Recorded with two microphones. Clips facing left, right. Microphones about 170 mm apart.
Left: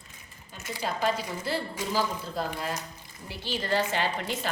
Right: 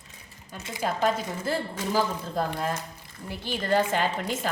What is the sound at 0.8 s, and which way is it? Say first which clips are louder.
A woman's voice: right 3 dB; 50° right (ahead or behind).